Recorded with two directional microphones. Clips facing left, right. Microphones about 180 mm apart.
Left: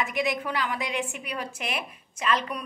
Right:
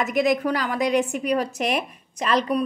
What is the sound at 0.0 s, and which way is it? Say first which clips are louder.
Speech: right 7 dB; 40° right (ahead or behind).